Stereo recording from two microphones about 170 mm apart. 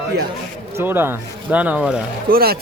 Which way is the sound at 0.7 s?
15° right (ahead or behind).